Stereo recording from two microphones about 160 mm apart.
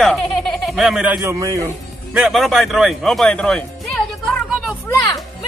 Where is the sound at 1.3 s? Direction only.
20° right (ahead or behind).